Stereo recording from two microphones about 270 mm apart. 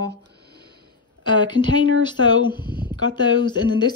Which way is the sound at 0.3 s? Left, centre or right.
Right.